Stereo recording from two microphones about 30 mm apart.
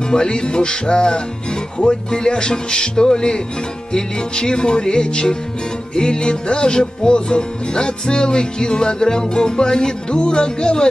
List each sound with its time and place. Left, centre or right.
0.1 s music: left